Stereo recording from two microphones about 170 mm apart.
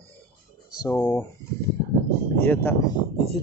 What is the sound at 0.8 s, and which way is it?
Speech, 20° left (ahead or behind).